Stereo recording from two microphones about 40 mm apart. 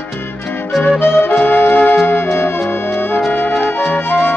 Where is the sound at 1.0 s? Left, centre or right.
Left.